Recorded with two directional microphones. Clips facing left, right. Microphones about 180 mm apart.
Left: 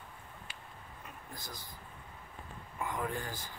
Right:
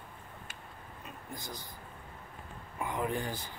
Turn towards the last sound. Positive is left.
turn(degrees=-20)  # may be behind; listen again after turning